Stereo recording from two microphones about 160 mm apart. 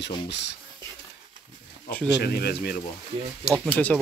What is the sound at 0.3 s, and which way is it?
Speech, 90° left.